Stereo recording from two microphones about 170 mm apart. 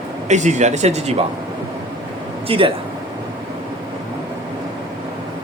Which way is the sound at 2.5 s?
30° right (ahead or behind).